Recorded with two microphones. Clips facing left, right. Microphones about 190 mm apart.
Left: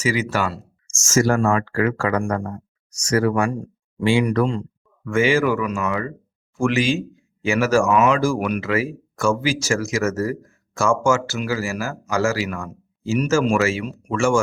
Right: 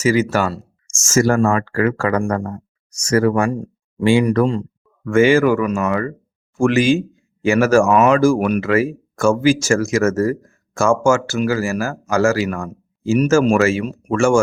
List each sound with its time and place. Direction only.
0.0 s a man's voice: 45° right (ahead or behind)
0.9 s a sound: 25° right (ahead or behind)
1.1 s a man's voice: 50° right (ahead or behind)
5.0 s a man's voice: 50° right (ahead or behind)